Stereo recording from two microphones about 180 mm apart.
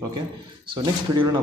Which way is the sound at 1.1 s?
25° right (ahead or behind).